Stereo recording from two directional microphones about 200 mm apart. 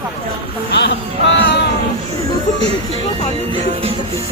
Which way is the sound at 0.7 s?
60° left (ahead or behind).